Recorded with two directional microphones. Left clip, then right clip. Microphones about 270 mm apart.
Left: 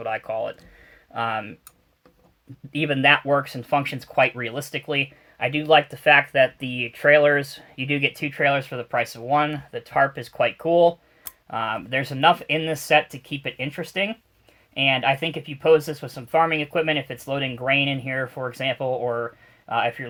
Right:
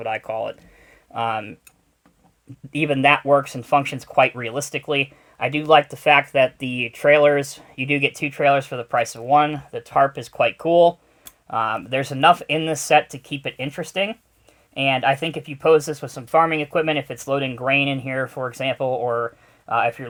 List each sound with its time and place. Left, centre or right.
0.0 s speech: right
2.7 s speech: right